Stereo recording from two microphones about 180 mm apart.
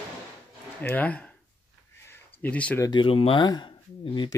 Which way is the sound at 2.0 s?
10° left (ahead or behind).